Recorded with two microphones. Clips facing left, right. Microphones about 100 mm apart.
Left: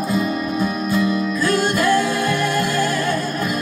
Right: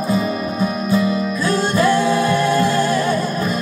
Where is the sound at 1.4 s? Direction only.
30° right (ahead or behind).